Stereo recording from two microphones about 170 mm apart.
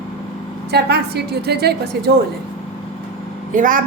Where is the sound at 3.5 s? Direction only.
50° right (ahead or behind).